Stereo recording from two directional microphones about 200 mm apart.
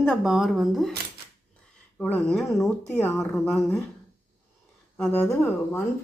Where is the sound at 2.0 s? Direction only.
5° left (ahead or behind).